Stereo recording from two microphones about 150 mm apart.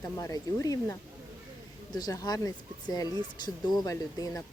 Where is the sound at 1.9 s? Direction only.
25° left (ahead or behind).